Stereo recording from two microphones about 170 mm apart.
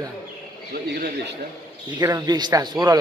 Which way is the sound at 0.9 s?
65° right (ahead or behind).